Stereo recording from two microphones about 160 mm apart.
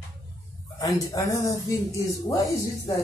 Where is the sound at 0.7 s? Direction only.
20° left (ahead or behind).